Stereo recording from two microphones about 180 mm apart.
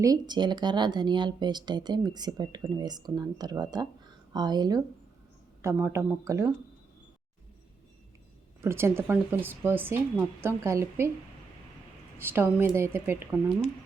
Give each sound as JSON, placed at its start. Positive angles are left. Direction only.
{"t": 0.0, "sound": "speech", "side_deg": -20}
{"t": 8.6, "sound": "speech", "side_deg": -15}
{"t": 12.2, "sound": "speech", "side_deg": -10}